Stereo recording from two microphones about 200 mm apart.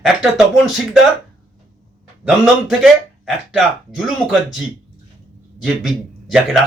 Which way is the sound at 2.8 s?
5° right (ahead or behind).